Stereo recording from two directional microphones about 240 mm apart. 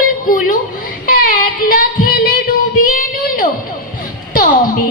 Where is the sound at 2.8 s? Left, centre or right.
Left.